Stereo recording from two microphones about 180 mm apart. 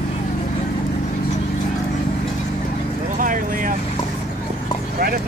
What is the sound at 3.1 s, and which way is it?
Vehicle, 50° right (ahead or behind).